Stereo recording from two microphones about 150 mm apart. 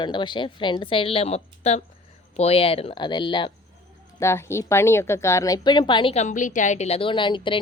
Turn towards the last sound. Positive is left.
turn(degrees=30)  # may be behind; listen again after turning